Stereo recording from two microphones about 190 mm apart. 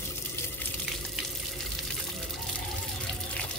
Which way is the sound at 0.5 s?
10° left (ahead or behind).